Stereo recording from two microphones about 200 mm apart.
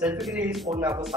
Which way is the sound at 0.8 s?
15° right (ahead or behind).